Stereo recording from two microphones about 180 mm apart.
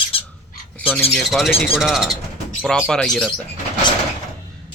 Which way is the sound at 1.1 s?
Centre (ahead or behind).